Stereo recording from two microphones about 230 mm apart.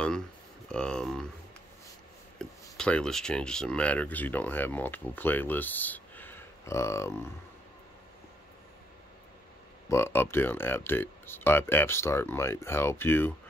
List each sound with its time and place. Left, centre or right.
0.7 s speech: centre
2.3 s speech: centre
9.8 s speech: centre